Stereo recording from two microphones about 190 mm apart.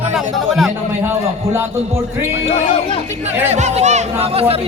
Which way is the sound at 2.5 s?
35° left (ahead or behind).